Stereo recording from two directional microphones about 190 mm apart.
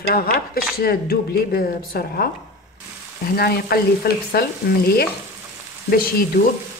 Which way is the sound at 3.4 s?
55° left (ahead or behind).